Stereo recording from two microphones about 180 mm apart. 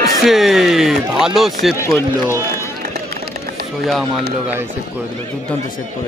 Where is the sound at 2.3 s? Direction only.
15° left (ahead or behind).